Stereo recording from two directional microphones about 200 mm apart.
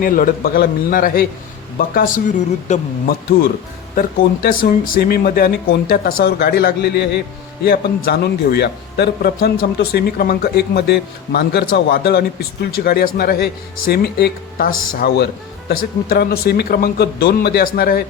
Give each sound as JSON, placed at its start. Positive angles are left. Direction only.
{"t": 0.0, "sound": "speech", "side_deg": 45}